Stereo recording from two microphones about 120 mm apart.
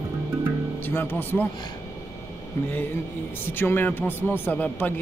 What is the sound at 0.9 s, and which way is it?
Music, 15° left (ahead or behind).